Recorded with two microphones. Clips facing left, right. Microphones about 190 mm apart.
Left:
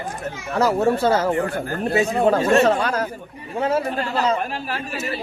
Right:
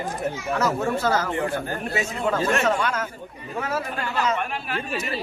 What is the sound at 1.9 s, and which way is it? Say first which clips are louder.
Speech: left 8 dB; 35° left (ahead or behind).